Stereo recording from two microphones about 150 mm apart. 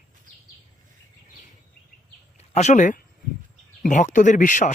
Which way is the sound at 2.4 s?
50° left (ahead or behind).